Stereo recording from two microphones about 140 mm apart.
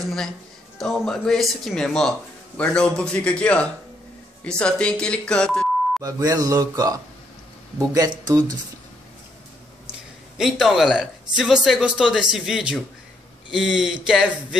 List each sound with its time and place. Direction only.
0.7 s speech: 5° left (ahead or behind)
6.0 s speech: 25° right (ahead or behind)
10.3 s speech: 5° right (ahead or behind)